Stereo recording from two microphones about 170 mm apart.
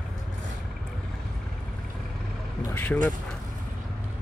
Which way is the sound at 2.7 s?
10° left (ahead or behind).